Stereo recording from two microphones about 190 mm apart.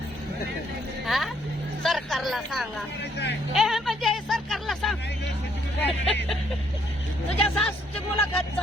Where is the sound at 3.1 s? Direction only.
65° left (ahead or behind).